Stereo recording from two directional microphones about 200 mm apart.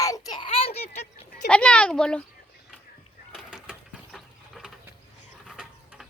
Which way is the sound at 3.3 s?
Centre (ahead or behind).